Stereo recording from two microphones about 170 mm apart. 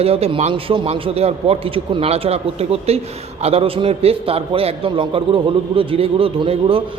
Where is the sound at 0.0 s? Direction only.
35° right (ahead or behind).